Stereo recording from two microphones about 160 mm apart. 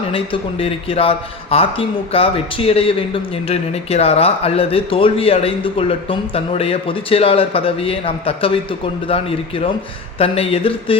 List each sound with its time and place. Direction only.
0.6 s speech: 35° left (ahead or behind)
10.2 s speech: 35° left (ahead or behind)